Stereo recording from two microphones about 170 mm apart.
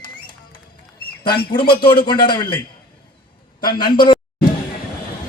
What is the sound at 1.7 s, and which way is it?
Speech, 30° left (ahead or behind).